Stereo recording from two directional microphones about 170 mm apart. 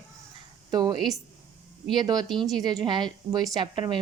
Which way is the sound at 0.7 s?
25° right (ahead or behind).